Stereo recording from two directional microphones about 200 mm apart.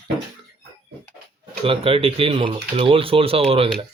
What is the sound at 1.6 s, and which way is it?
Speech, 30° right (ahead or behind).